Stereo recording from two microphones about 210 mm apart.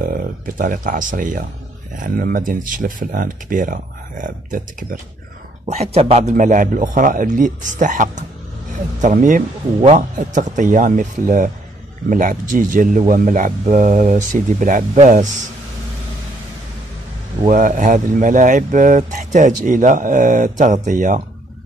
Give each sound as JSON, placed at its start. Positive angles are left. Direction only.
{"t": 0.0, "sound": "speech", "side_deg": -40}
{"t": 17.5, "sound": "speech", "side_deg": -40}